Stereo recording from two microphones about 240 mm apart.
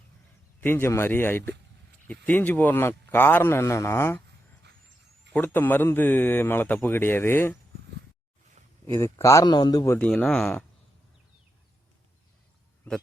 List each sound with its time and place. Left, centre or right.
0.6 s a man's voice: centre
5.3 s a man's voice: centre
8.6 s a sound: right
8.9 s a man's voice: centre